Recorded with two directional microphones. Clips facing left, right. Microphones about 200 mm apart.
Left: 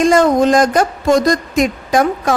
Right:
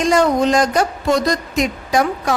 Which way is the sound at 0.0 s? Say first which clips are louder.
Left 4 dB; 50° left (ahead or behind).